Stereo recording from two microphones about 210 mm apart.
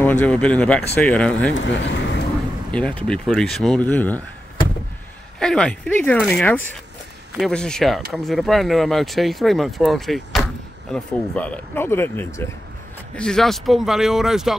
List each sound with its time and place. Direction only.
0.0 s speech: 5° left (ahead or behind)
1.5 s speech: 60° left (ahead or behind)
2.7 s speech: 5° left (ahead or behind)
5.4 s speech: 5° left (ahead or behind)